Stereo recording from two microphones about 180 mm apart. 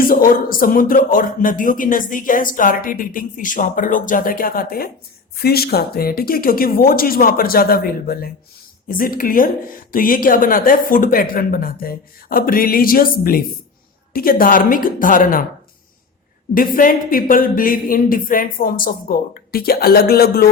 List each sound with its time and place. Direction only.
0.0 s speech: 50° left (ahead or behind)
16.6 s speech: 50° left (ahead or behind)